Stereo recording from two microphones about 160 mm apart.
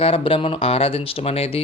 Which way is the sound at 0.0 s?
35° left (ahead or behind).